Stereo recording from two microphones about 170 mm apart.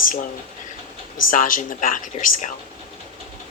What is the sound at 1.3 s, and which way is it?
Speech, 55° left (ahead or behind).